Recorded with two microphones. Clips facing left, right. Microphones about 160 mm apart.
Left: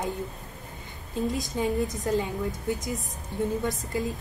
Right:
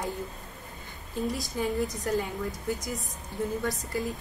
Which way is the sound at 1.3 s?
20° left (ahead or behind).